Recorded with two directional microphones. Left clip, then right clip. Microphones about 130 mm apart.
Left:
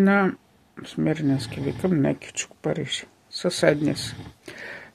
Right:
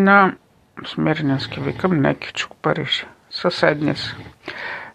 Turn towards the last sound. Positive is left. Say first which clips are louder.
# right 9 dB
turn(degrees=25)  # may be behind; listen again after turning